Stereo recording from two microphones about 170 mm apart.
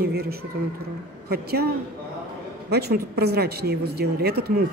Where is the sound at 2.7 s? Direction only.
70° right (ahead or behind).